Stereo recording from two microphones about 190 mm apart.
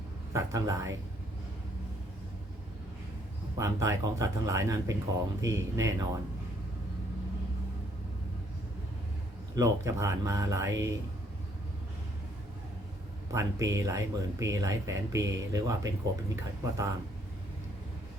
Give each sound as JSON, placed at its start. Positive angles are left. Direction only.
{"t": 0.3, "sound": "speech", "side_deg": -15}
{"t": 3.6, "sound": "speech", "side_deg": -15}
{"t": 9.6, "sound": "speech", "side_deg": -15}
{"t": 13.3, "sound": "speech", "side_deg": -15}